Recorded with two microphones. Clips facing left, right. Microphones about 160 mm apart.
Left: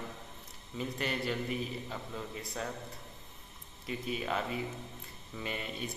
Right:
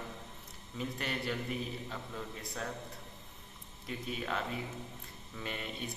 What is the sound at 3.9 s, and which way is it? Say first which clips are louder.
Speech: left 3 dB; 5° left (ahead or behind).